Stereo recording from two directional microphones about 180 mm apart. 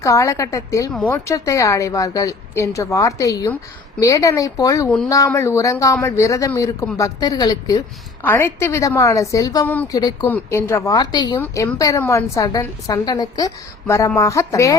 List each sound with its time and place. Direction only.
0.0 s a woman's voice: 15° left (ahead or behind)
9.6 s a woman's voice: 10° left (ahead or behind)
10.0 s a woman's voice: 25° left (ahead or behind)
10.2 s a woman's voice: 10° left (ahead or behind)
11.3 s a woman's voice: 15° left (ahead or behind)